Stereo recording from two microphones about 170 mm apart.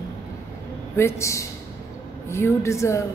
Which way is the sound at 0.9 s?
15° left (ahead or behind).